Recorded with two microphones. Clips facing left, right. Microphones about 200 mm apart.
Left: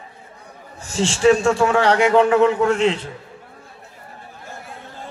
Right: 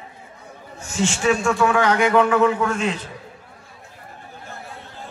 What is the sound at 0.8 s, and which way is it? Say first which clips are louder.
A man's voice: left 5 dB; 30° left (ahead or behind).